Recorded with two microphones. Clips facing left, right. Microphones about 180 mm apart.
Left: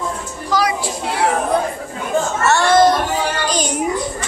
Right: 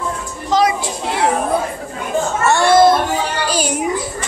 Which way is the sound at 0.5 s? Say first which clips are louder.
Right 3 dB; 25° right (ahead or behind).